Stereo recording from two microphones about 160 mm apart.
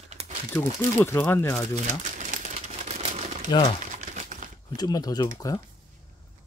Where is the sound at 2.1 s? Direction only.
50° right (ahead or behind).